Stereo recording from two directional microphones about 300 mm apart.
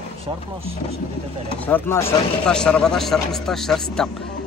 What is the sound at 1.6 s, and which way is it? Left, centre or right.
Speech, centre.